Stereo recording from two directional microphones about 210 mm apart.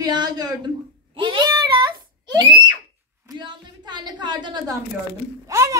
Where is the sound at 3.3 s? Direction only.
20° right (ahead or behind).